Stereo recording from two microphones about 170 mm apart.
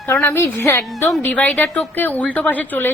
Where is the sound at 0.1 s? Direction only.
15° left (ahead or behind).